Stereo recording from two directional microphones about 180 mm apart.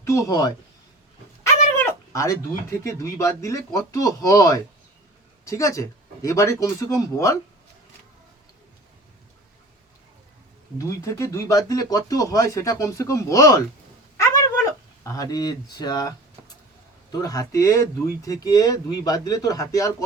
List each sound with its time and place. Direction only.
0.0 s speech: 15° left (ahead or behind)
1.7 s speech: 15° left (ahead or behind)
10.8 s speech: 15° left (ahead or behind)
14.2 s a sound: 15° left (ahead or behind)
17.1 s speech: 20° left (ahead or behind)